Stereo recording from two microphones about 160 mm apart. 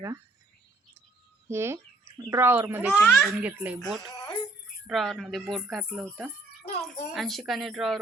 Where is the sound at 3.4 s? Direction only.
10° right (ahead or behind).